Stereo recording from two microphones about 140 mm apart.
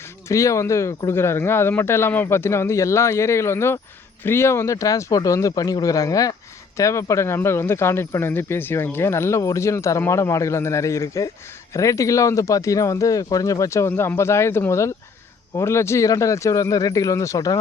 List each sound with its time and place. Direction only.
0.3 s speech: 20° left (ahead or behind)